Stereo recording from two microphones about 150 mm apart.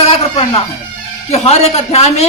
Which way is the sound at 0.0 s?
45° left (ahead or behind).